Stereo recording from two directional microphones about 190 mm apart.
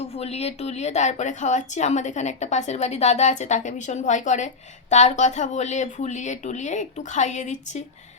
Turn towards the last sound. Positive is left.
turn(degrees=40)  # may be behind; listen again after turning